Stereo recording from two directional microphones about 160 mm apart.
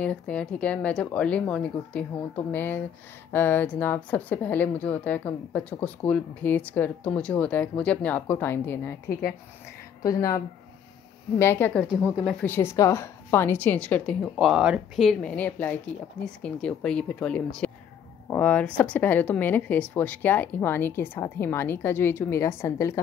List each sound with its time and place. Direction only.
0.0 s a woman's voice: 5° left (ahead or behind)
10.0 s a woman's voice: 20° left (ahead or behind)
11.9 s speech: 5° right (ahead or behind)
12.3 s a woman's voice: 10° left (ahead or behind)
14.5 s a woman's voice: 5° right (ahead or behind); by 22.9 s 20° left (ahead or behind)